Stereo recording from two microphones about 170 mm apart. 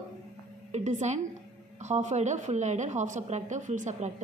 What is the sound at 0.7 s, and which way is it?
A woman's voice, 40° right (ahead or behind).